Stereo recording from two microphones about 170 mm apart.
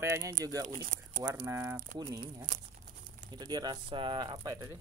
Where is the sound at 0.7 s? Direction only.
55° right (ahead or behind).